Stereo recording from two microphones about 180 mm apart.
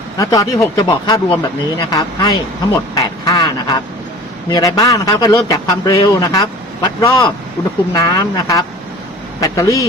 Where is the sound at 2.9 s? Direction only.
20° left (ahead or behind).